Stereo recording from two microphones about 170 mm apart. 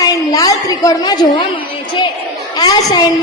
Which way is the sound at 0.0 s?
20° left (ahead or behind).